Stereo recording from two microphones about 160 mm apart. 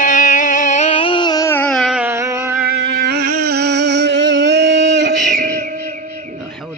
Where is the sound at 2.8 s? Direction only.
90° right.